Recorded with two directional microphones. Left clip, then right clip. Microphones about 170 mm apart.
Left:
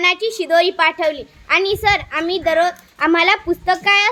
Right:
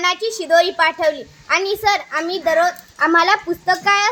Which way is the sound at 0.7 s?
50° left (ahead or behind).